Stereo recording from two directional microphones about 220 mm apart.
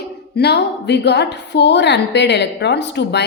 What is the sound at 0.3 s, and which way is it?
A woman's voice, 50° left (ahead or behind).